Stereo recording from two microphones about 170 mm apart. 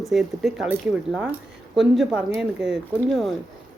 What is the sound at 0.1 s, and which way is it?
Speech, centre (ahead or behind).